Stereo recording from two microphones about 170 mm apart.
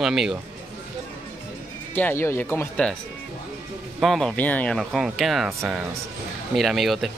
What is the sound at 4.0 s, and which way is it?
Speech, centre (ahead or behind).